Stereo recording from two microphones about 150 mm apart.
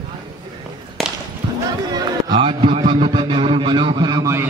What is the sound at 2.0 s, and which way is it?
A man's voice, 25° right (ahead or behind).